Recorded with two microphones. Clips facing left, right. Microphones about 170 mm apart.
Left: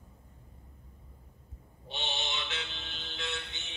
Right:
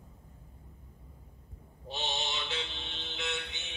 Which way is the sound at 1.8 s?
35° right (ahead or behind).